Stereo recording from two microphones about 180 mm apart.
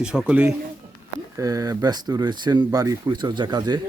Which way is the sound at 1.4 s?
20° right (ahead or behind).